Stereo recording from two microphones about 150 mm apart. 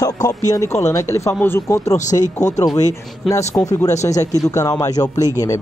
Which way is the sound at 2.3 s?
20° left (ahead or behind).